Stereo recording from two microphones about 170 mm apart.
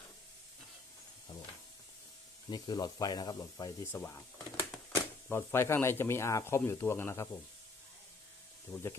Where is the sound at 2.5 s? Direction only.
25° left (ahead or behind).